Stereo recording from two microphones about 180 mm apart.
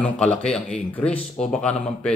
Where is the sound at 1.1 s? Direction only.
35° left (ahead or behind).